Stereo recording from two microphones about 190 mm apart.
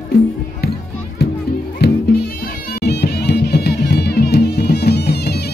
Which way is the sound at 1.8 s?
55° left (ahead or behind).